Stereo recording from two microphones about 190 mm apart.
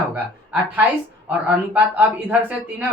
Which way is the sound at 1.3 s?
10° right (ahead or behind).